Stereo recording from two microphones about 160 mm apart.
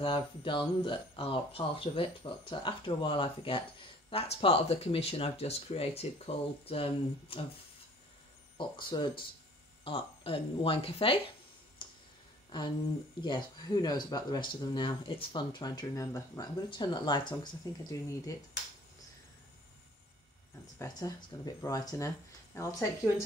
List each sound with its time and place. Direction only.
0.0 s speech: 30° left (ahead or behind)
8.5 s speech: 30° left (ahead or behind)
11.8 s tick-tock: 30° left (ahead or behind)
12.5 s speech: 30° left (ahead or behind)
20.8 s speech: 20° left (ahead or behind)